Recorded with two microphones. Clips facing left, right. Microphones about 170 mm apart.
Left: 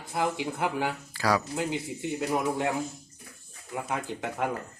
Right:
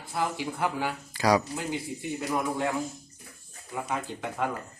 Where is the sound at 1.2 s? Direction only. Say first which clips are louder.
Right 3 dB; 15° right (ahead or behind).